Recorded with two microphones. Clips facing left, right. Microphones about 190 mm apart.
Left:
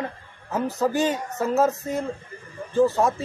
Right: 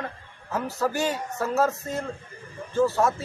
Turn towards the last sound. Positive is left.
turn(degrees=15)  # may be behind; listen again after turning